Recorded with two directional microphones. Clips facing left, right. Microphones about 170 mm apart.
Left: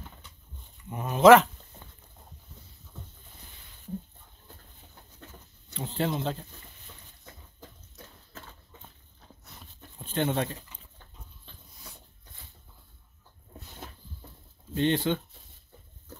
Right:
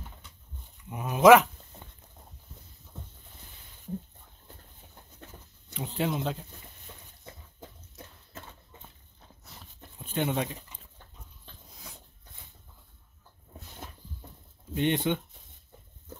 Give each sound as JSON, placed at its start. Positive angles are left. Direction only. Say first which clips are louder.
{"t": 0.8, "sound": "speech", "louder": "left 1 dB", "side_deg": -5}
{"t": 5.7, "sound": "speech", "louder": "left 1 dB", "side_deg": -10}
{"t": 9.9, "sound": "speech", "louder": "left 1 dB", "side_deg": -10}
{"t": 14.7, "sound": "speech", "louder": "left 1 dB", "side_deg": -15}